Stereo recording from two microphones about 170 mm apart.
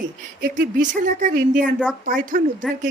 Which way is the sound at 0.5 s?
50° right (ahead or behind).